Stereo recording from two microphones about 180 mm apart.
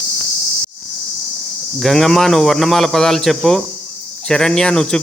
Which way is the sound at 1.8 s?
Centre (ahead or behind).